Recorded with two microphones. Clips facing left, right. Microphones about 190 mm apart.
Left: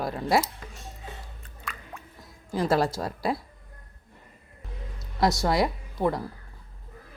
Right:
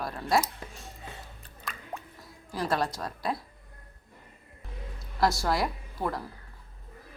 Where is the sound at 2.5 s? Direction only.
25° left (ahead or behind).